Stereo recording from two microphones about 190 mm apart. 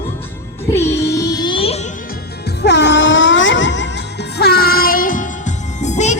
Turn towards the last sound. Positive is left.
turn(degrees=40)  # may be behind; listen again after turning